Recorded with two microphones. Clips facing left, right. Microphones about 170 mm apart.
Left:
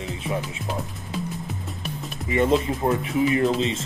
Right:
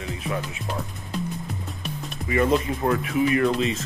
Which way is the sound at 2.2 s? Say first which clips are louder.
Left 1 dB; 25° left (ahead or behind).